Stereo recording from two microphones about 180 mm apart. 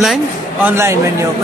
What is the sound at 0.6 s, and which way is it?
Speech, 15° right (ahead or behind).